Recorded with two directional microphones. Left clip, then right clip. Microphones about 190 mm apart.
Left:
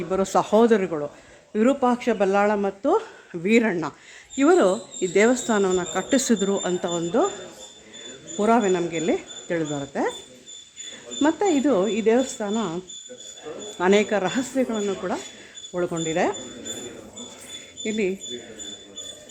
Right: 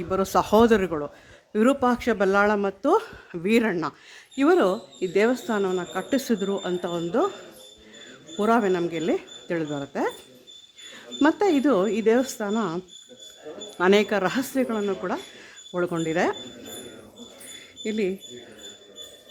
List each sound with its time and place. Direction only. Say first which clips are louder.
0.1 s speech: even; 15° right (ahead or behind)
8.4 s speech: left 2 dB; 15° right (ahead or behind)
11.2 s speech: even; 20° right (ahead or behind)
17.8 s speech: left 1 dB; 15° right (ahead or behind)